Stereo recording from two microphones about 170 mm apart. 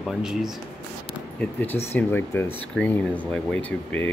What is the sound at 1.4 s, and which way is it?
Speech, 10° left (ahead or behind).